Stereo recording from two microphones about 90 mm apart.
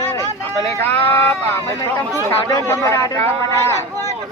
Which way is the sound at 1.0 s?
25° left (ahead or behind).